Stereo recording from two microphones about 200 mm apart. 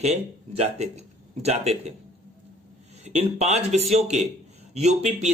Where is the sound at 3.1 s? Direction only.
35° right (ahead or behind).